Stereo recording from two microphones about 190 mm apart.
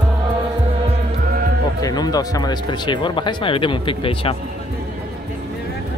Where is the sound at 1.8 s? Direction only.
20° left (ahead or behind).